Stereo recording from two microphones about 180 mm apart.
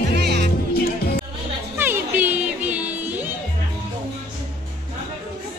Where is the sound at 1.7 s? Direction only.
10° right (ahead or behind).